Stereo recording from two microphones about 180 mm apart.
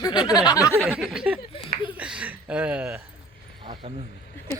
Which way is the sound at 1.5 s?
30° left (ahead or behind).